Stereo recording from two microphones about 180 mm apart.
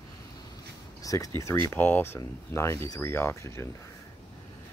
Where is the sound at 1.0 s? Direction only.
20° left (ahead or behind).